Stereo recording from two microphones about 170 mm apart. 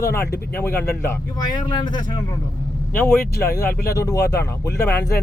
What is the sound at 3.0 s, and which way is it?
Speech, 15° left (ahead or behind).